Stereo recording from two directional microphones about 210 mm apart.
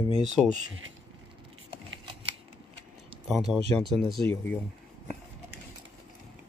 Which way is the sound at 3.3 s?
Centre (ahead or behind).